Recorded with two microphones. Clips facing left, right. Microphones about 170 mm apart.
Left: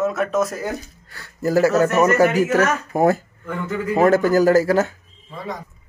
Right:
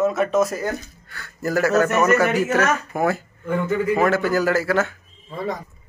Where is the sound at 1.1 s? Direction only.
30° left (ahead or behind).